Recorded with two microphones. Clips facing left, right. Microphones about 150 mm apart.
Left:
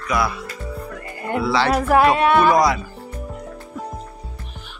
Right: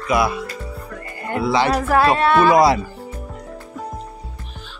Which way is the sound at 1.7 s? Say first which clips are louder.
Left 4 dB; 10° left (ahead or behind).